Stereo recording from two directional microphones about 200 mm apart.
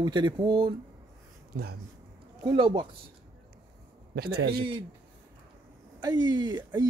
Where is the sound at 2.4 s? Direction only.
25° right (ahead or behind).